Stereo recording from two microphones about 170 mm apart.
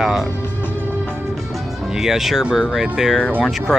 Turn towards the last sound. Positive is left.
turn(degrees=-5)  # may be behind; listen again after turning